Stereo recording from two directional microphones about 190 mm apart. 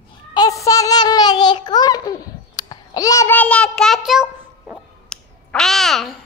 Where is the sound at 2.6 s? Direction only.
20° left (ahead or behind); by 5.2 s 5° right (ahead or behind).